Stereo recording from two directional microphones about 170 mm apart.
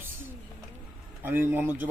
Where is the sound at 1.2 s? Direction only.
10° right (ahead or behind).